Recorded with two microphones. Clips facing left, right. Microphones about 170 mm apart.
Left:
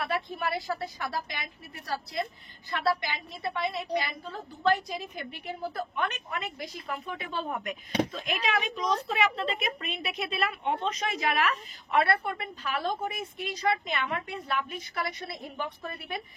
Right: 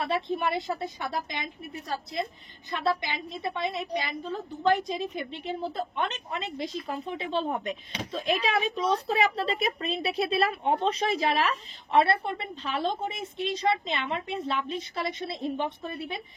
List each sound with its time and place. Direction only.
0.0 s a woman's voice: 25° right (ahead or behind)